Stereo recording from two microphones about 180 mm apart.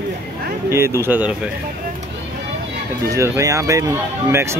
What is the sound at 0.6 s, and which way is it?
Speech, 15° right (ahead or behind).